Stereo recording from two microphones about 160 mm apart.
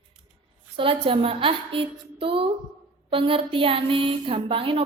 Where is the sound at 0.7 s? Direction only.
35° right (ahead or behind).